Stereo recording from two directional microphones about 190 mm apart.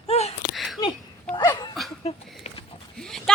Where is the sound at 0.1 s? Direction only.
35° left (ahead or behind).